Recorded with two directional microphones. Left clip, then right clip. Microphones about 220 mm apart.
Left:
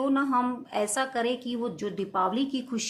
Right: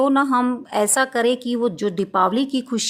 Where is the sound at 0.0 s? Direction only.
40° right (ahead or behind).